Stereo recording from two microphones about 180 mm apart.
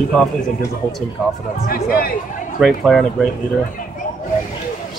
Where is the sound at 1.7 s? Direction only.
55° left (ahead or behind).